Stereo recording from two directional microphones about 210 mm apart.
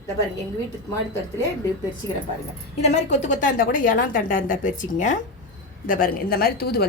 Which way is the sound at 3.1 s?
35° left (ahead or behind).